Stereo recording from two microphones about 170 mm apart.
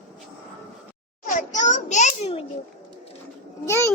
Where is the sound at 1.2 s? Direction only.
50° left (ahead or behind).